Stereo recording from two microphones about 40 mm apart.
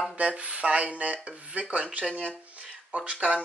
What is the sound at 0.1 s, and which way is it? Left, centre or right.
Speech, right.